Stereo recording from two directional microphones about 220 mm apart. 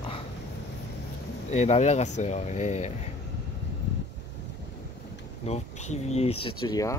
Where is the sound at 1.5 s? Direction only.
30° left (ahead or behind).